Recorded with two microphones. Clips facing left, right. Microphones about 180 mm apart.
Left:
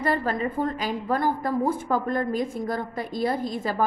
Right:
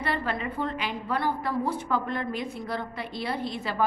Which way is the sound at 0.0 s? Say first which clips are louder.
Left 5 dB; 40° left (ahead or behind).